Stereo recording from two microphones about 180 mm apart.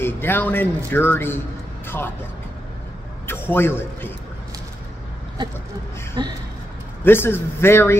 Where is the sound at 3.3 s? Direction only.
10° left (ahead or behind).